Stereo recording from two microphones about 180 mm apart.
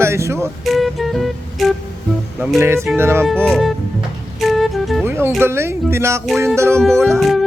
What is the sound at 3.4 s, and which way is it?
Speech, centre (ahead or behind).